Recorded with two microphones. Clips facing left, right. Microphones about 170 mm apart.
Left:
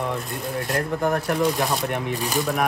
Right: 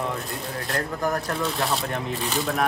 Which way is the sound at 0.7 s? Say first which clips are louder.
Left 3 dB; 20° left (ahead or behind).